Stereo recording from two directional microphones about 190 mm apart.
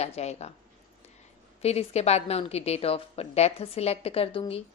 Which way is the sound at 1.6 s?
35° left (ahead or behind).